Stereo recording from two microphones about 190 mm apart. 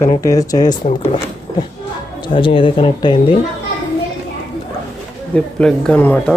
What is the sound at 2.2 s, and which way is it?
Speech, 25° left (ahead or behind).